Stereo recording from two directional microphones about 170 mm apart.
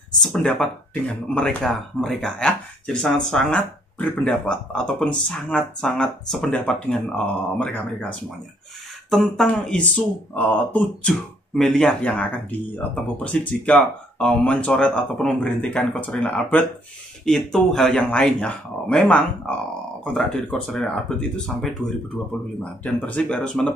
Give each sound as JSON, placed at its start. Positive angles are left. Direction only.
{"t": 0.1, "sound": "speech", "side_deg": 0}